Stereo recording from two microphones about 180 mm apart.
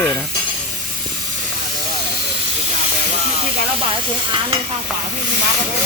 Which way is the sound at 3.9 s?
30° right (ahead or behind).